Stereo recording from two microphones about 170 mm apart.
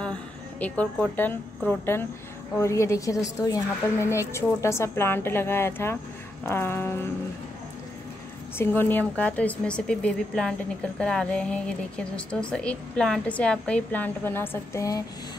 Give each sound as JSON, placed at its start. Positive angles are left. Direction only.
{"t": 0.0, "sound": "a sound", "side_deg": 5}
{"t": 1.7, "sound": "speech", "side_deg": 15}
{"t": 8.5, "sound": "speech", "side_deg": 10}